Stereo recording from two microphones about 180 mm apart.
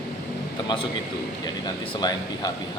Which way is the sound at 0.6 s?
25° left (ahead or behind).